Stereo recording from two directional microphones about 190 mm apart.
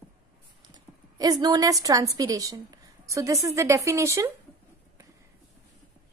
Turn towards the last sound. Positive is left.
turn(degrees=-15)  # may be behind; listen again after turning